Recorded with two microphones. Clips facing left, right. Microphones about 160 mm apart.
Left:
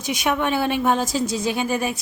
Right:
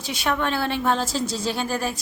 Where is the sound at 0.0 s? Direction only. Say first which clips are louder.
Left 3 dB; 20° left (ahead or behind).